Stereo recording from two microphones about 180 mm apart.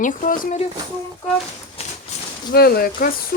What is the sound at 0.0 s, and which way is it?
Speech, 50° left (ahead or behind).